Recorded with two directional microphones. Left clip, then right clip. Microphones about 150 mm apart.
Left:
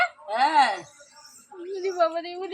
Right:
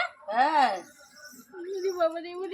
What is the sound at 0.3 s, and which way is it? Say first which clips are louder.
Music: left 3 dB; 30° right (ahead or behind).